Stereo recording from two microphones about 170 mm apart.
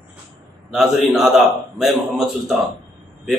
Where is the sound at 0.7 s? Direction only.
Centre (ahead or behind).